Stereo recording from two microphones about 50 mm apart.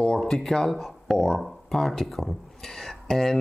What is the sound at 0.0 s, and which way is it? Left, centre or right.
Speech, centre.